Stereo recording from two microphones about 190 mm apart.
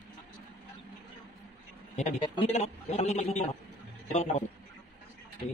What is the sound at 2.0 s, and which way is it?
A man's voice, 35° left (ahead or behind).